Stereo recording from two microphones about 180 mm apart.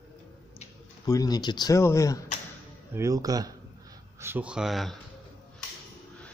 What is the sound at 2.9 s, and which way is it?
Speech, 20° right (ahead or behind).